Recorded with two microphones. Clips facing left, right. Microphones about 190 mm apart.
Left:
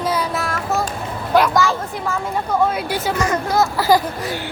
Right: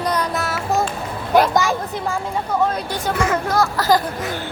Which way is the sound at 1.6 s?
15° right (ahead or behind).